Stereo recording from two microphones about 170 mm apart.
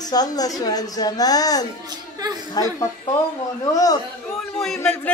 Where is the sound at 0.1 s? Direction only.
20° left (ahead or behind).